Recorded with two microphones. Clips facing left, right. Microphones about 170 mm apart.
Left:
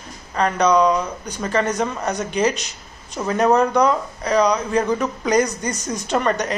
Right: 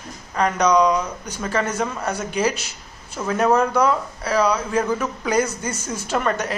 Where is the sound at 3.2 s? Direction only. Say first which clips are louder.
Left 2 dB; 15° left (ahead or behind).